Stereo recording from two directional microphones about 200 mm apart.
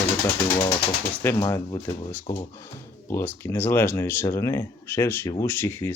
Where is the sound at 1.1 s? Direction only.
10° left (ahead or behind).